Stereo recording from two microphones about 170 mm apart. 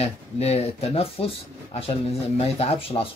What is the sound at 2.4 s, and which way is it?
Speech, 35° left (ahead or behind).